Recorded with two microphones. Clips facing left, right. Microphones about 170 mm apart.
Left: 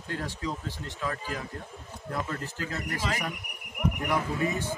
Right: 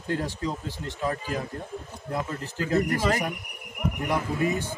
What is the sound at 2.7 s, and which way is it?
Speech, 50° right (ahead or behind).